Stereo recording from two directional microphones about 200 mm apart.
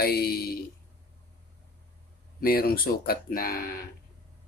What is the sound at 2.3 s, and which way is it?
Speech, 50° left (ahead or behind).